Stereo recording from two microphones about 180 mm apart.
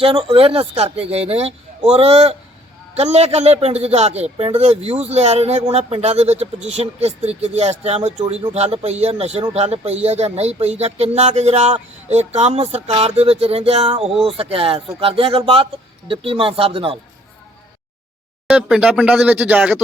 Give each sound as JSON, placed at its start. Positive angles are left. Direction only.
{"t": 0.0, "sound": "speech", "side_deg": -30}
{"t": 18.4, "sound": "speech", "side_deg": -5}